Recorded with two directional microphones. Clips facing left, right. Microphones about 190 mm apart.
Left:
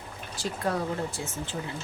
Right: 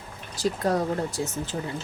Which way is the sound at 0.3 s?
40° right (ahead or behind).